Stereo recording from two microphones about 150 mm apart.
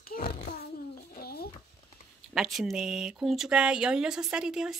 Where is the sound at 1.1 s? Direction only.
90° left.